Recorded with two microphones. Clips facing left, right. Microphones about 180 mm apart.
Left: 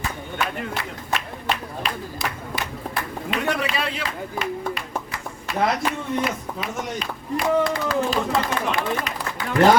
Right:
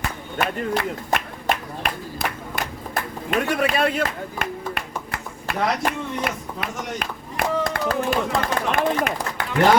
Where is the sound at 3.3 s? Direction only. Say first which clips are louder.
Right 3 dB; 50° right (ahead or behind).